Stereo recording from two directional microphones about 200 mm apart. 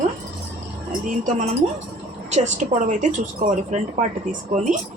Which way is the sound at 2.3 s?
35° right (ahead or behind).